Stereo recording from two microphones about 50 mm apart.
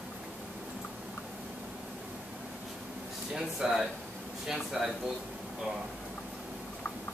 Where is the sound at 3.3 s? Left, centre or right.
Centre.